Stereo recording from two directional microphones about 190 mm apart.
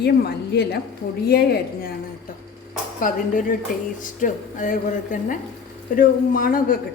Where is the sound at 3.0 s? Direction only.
45° left (ahead or behind).